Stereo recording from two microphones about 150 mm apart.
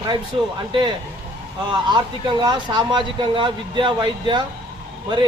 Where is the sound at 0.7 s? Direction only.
30° right (ahead or behind).